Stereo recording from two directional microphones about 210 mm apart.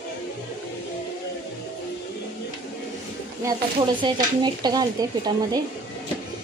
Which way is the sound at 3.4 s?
20° right (ahead or behind).